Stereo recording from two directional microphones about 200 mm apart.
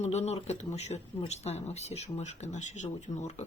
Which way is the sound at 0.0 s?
35° left (ahead or behind).